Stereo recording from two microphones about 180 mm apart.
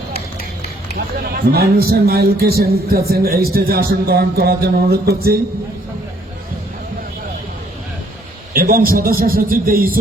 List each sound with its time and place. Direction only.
0.9 s speech: 55° right (ahead or behind)
8.5 s a man's voice: 55° right (ahead or behind)